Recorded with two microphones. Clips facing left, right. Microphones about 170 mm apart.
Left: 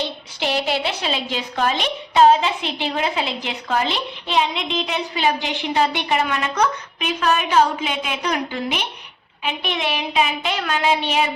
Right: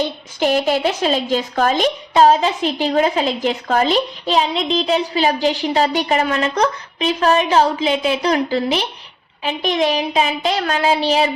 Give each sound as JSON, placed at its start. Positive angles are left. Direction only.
{"t": 0.0, "sound": "a woman's voice", "side_deg": -45}